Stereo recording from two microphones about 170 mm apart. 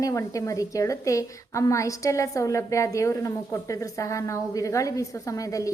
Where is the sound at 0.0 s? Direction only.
20° left (ahead or behind).